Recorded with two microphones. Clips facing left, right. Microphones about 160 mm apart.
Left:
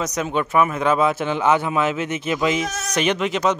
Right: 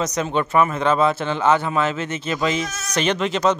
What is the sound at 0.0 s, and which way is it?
Speech, 10° left (ahead or behind).